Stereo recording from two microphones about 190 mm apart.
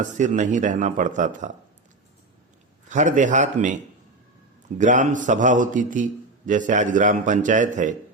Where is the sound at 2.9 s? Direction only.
40° right (ahead or behind).